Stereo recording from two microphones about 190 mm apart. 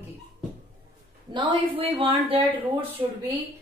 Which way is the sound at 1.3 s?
25° right (ahead or behind).